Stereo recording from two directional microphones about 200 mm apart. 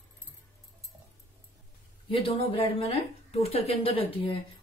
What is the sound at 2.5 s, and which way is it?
A woman's voice, 25° left (ahead or behind).